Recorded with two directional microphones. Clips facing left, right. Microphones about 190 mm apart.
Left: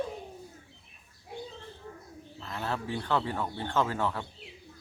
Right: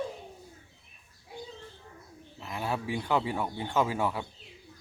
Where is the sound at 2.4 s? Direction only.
10° right (ahead or behind).